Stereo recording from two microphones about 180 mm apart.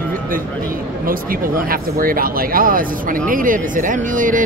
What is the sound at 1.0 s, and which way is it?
Speech, 50° right (ahead or behind).